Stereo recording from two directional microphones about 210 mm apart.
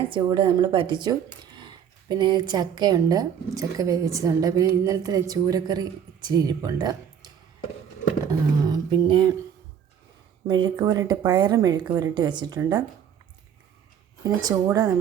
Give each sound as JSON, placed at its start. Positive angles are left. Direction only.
{"t": 0.1, "sound": "a woman's voice", "side_deg": -20}
{"t": 8.6, "sound": "a sound", "side_deg": -20}
{"t": 10.4, "sound": "speech", "side_deg": -20}
{"t": 14.3, "sound": "a woman's voice", "side_deg": -15}